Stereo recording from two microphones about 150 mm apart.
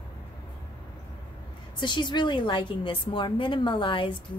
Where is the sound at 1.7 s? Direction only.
30° left (ahead or behind).